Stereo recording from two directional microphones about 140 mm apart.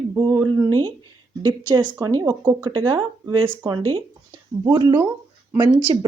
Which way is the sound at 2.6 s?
35° right (ahead or behind).